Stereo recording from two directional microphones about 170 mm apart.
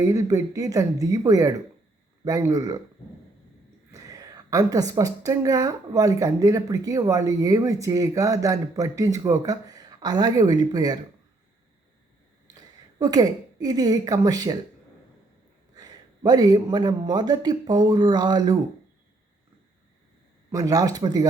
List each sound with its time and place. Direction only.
0.0 s a woman's voice: 20° right (ahead or behind)
3.9 s a woman's voice: 20° right (ahead or behind)
13.0 s a woman's voice: 20° right (ahead or behind)
15.7 s a woman's voice: 25° right (ahead or behind)
20.5 s a woman's voice: 20° right (ahead or behind)